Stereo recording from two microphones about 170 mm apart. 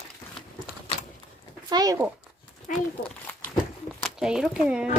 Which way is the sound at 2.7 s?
50° left (ahead or behind).